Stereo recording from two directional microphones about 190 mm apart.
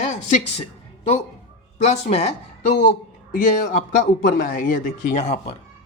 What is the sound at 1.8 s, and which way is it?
Speech, 35° left (ahead or behind).